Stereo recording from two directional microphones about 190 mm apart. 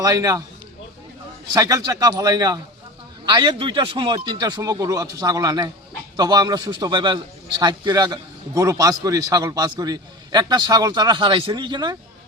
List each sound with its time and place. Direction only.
0.0 s a man's voice: 20° right (ahead or behind)
1.5 s a man's voice: 20° right (ahead or behind)